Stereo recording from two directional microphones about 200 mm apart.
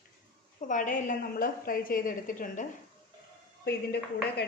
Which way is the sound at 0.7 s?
40° left (ahead or behind).